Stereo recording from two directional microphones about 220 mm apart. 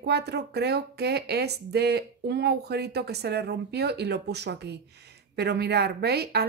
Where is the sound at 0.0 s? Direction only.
50° right (ahead or behind).